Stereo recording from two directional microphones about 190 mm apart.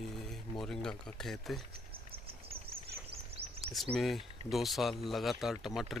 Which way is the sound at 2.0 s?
30° right (ahead or behind).